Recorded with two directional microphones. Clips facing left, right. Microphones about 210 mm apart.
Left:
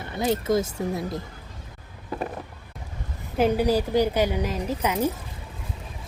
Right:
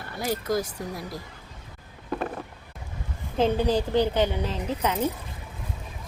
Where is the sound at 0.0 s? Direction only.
20° left (ahead or behind).